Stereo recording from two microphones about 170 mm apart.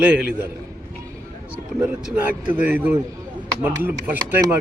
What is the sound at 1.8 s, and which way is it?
A man's voice, 5° right (ahead or behind).